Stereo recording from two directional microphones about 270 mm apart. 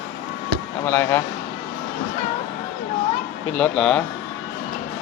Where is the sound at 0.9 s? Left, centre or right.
Centre.